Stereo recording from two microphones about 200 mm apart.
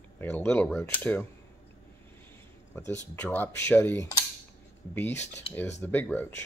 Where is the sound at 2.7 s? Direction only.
10° left (ahead or behind).